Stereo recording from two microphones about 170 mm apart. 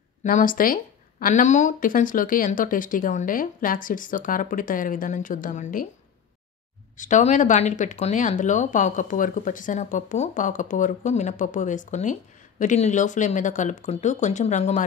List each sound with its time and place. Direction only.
0.2 s speech: 50° left (ahead or behind)
7.0 s speech: 45° left (ahead or behind)